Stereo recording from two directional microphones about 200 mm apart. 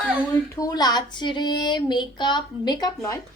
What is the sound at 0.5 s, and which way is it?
Speech, 20° left (ahead or behind).